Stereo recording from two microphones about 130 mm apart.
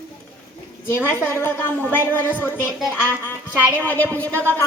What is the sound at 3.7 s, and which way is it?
Speech, 10° left (ahead or behind).